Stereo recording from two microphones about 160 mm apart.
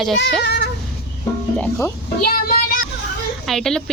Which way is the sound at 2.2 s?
65° left (ahead or behind).